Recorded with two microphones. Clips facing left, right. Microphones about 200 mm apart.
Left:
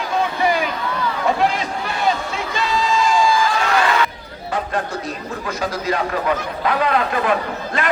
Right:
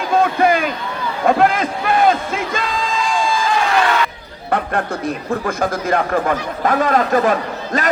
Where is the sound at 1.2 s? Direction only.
50° right (ahead or behind).